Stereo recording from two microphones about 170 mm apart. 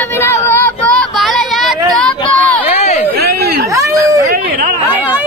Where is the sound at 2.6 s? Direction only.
40° left (ahead or behind).